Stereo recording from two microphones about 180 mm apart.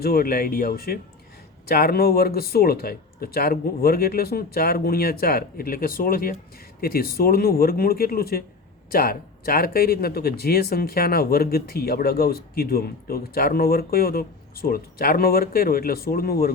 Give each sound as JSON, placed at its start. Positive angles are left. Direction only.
{"t": 0.0, "sound": "speech", "side_deg": 55}